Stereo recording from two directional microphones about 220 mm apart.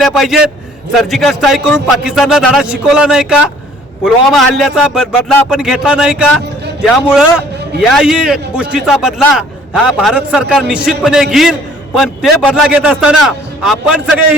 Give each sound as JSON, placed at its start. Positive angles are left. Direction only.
{"t": 0.0, "sound": "a man's voice", "side_deg": 0}